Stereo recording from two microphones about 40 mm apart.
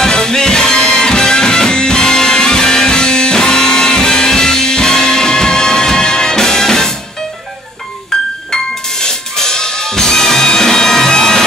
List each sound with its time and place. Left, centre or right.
0.0 s music: centre
9.0 s music: centre